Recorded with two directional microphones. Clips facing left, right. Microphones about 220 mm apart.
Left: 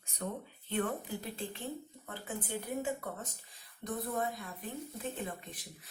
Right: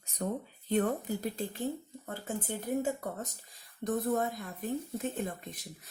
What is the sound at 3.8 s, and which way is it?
A woman's voice, 45° right (ahead or behind).